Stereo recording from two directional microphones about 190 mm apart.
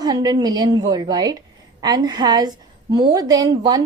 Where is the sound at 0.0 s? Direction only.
20° right (ahead or behind).